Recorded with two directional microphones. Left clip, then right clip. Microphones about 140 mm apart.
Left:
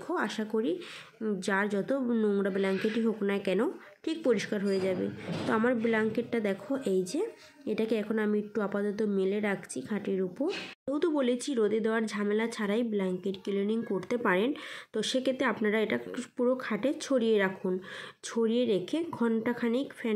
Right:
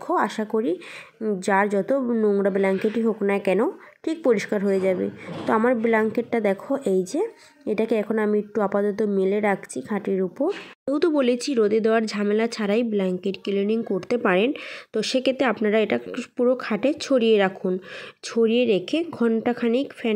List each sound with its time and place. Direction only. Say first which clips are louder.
0.1 s a woman's voice: right 9 dB; 30° right (ahead or behind)
10.9 s speech: right 8 dB; 40° right (ahead or behind)